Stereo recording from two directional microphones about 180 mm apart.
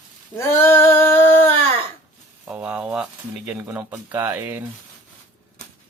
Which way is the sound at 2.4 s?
5° right (ahead or behind).